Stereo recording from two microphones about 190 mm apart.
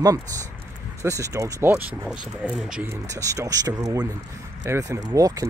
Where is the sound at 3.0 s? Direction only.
15° right (ahead or behind).